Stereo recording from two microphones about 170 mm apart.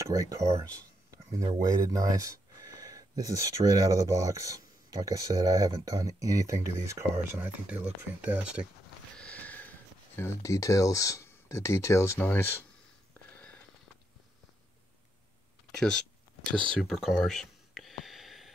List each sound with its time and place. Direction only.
0.1 s speech: 20° right (ahead or behind)
9.1 s sniff: 5° left (ahead or behind)
10.1 s speech: 15° left (ahead or behind)
13.1 s a sound: 5° left (ahead or behind)
15.7 s speech: 5° left (ahead or behind)
16.7 s a sound: centre (ahead or behind)